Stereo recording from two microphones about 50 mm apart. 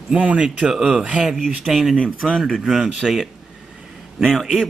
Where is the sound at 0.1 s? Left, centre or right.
Right.